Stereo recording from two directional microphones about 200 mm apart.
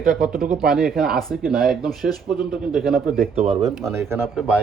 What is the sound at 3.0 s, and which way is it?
Speech, 40° right (ahead or behind).